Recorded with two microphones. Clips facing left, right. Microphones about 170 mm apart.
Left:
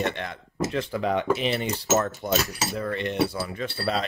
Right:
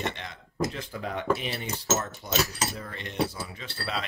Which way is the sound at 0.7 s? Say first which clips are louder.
Left 8 dB; 80° left.